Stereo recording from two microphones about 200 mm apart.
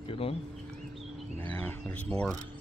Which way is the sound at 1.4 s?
10° left (ahead or behind).